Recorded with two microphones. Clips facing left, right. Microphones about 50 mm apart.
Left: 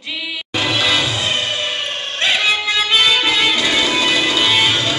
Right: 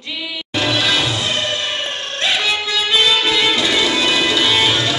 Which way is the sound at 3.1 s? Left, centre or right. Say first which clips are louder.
Even; centre.